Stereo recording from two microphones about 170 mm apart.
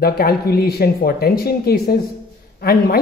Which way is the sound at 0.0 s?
60° left (ahead or behind).